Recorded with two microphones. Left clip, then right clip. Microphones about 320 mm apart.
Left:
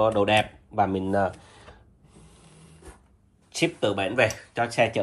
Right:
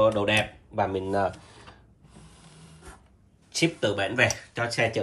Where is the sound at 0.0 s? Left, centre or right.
Centre.